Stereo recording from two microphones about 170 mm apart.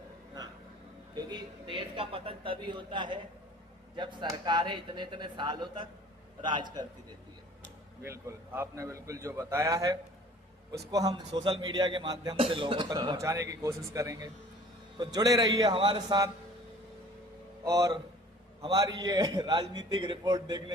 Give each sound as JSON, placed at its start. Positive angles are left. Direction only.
{"t": 1.1, "sound": "a man's voice", "side_deg": -25}
{"t": 8.0, "sound": "a man's voice", "side_deg": -15}
{"t": 17.6, "sound": "a man's voice", "side_deg": -20}